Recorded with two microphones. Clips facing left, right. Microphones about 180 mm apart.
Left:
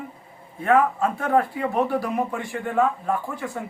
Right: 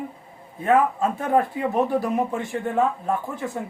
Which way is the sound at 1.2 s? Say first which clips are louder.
Even; 20° right (ahead or behind).